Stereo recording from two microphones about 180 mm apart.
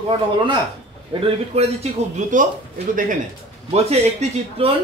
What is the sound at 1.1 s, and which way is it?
Speech, 30° right (ahead or behind).